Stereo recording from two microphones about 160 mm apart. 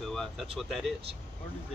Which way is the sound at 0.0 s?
Centre (ahead or behind).